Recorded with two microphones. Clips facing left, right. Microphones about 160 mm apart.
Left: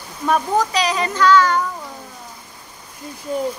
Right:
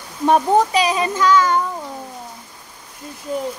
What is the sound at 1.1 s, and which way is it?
Child singing, 15° right (ahead or behind).